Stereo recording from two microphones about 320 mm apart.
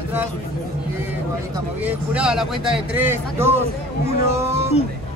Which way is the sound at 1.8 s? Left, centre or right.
Centre.